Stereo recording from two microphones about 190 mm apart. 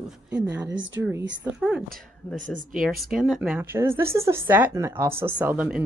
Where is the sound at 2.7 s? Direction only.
Centre (ahead or behind).